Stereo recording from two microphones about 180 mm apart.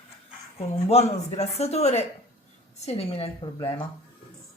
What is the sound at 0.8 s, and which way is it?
Speech, 35° left (ahead or behind).